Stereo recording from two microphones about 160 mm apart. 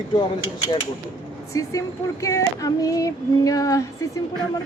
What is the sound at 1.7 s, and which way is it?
Speech, 20° left (ahead or behind).